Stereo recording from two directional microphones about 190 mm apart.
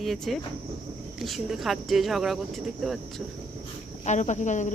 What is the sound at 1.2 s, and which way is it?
Speech, centre (ahead or behind).